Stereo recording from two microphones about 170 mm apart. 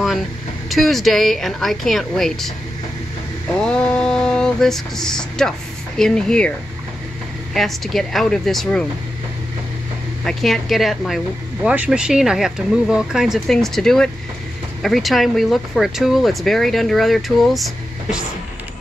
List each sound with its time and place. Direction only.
0.7 s speech: centre (ahead or behind)
3.6 s speech: 5° left (ahead or behind)
7.5 s speech: centre (ahead or behind)
10.2 s speech: centre (ahead or behind)